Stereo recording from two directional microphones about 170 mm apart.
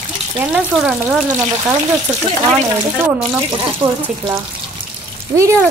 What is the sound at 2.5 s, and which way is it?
Speech, 15° right (ahead or behind).